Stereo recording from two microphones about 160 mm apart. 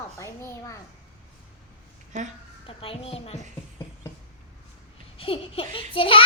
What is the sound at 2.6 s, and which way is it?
Speech, 35° left (ahead or behind).